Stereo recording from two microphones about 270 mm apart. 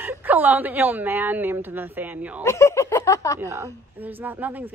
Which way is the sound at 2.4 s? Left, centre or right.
Centre.